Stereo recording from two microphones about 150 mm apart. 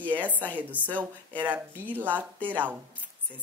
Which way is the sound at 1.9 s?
10° right (ahead or behind).